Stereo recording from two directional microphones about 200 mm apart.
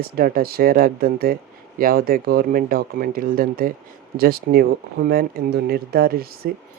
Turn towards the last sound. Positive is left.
turn(degrees=-50)  # may be behind; listen again after turning